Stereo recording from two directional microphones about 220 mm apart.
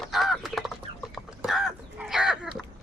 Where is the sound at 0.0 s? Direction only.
Centre (ahead or behind).